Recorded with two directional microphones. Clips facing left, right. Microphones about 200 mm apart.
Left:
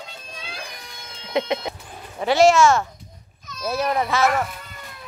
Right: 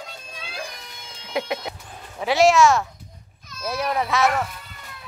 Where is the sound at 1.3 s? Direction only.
5° right (ahead or behind).